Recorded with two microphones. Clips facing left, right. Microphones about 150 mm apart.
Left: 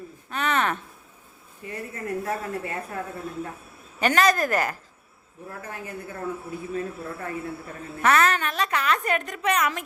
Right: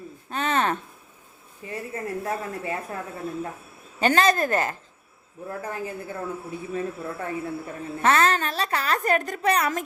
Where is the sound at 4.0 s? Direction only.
30° right (ahead or behind).